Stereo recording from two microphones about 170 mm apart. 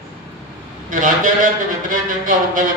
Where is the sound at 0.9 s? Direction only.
50° right (ahead or behind).